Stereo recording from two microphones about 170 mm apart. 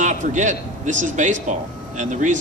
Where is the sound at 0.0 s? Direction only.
45° right (ahead or behind).